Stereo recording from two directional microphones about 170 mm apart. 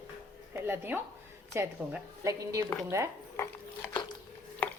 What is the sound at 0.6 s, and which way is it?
A woman's voice, 15° right (ahead or behind).